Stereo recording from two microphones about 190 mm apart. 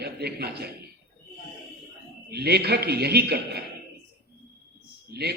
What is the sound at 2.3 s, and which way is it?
A man's voice, 55° right (ahead or behind).